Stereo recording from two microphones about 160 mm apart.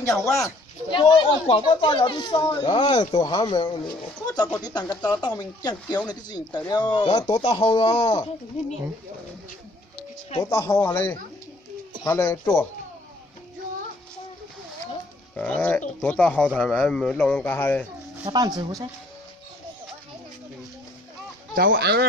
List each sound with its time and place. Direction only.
0.0 s speech: 20° left (ahead or behind)
0.8 s speech: 30° left (ahead or behind)
7.4 s speech: 40° left (ahead or behind)
10.5 s speech: 15° left (ahead or behind)
15.3 s speech: 10° left (ahead or behind)
18.2 s speech: 25° right (ahead or behind)
21.5 s speech: 80° right